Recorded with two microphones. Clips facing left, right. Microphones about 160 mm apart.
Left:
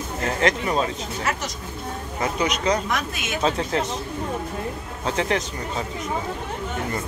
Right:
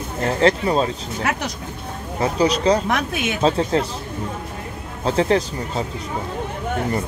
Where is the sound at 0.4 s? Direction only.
30° right (ahead or behind).